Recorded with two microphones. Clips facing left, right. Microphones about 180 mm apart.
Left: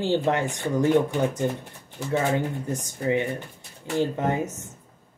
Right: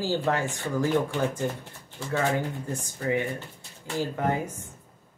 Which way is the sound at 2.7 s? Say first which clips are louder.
Left 3 dB; 20° left (ahead or behind).